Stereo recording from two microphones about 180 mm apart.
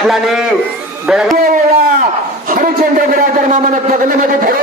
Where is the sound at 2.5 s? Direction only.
50° right (ahead or behind).